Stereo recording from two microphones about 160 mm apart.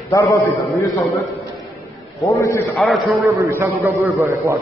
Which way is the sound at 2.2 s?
20° left (ahead or behind).